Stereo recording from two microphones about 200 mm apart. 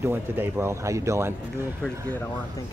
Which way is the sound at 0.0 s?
10° right (ahead or behind).